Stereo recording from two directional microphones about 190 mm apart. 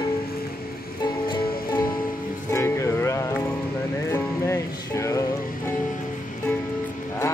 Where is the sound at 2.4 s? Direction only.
15° left (ahead or behind).